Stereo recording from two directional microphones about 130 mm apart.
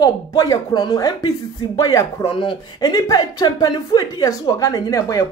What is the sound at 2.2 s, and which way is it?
Speech, 40° left (ahead or behind).